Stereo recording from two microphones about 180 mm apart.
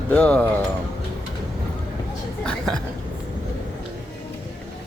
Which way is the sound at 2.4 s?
5° left (ahead or behind).